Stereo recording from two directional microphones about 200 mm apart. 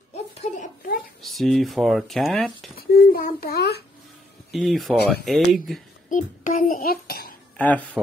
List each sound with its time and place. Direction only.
0.4 s a child's voice: 40° left (ahead or behind)
1.2 s speech: centre (ahead or behind)
2.7 s a child's voice: 50° left (ahead or behind)
4.5 s speech: centre (ahead or behind)
6.0 s a child's voice: 40° left (ahead or behind)
7.5 s speech: 10° left (ahead or behind)